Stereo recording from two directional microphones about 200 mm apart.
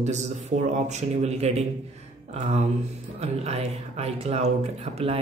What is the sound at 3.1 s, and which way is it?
Speech, 30° right (ahead or behind).